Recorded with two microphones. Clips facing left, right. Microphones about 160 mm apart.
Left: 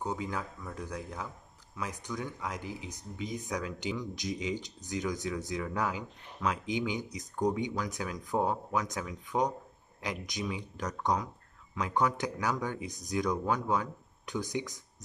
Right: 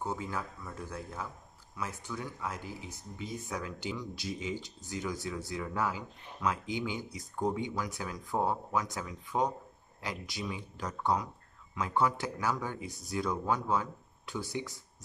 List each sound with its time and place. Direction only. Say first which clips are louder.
0.0 s speech: left 1 dB; 15° left (ahead or behind)